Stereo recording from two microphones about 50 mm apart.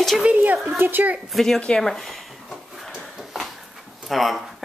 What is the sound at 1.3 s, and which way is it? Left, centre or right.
Speech, centre.